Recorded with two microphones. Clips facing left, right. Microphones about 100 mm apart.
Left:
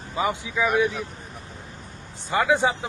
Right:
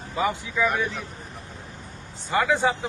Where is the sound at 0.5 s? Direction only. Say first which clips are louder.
Left 5 dB; 10° left (ahead or behind).